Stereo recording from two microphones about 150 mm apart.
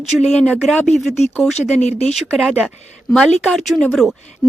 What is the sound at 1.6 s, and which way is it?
Speech, 50° left (ahead or behind).